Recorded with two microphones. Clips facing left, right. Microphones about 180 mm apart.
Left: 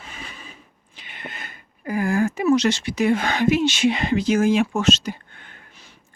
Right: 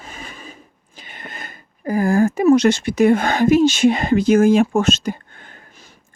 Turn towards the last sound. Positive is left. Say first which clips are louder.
# right 3 dB
turn(degrees=-45)  # may be behind; listen again after turning